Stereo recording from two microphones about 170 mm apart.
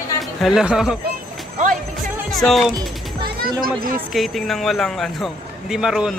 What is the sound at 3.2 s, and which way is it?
Music, 60° right (ahead or behind).